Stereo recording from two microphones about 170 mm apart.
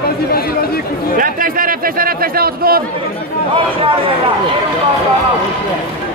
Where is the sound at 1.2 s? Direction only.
55° right (ahead or behind).